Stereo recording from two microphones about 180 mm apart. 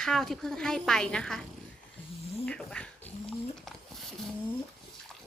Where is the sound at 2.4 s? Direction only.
5° left (ahead or behind).